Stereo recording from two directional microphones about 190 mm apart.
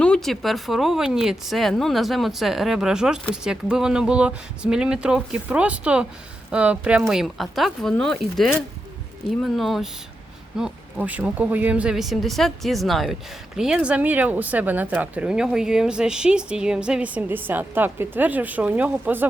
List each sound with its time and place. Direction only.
0.0 s speech: 5° left (ahead or behind)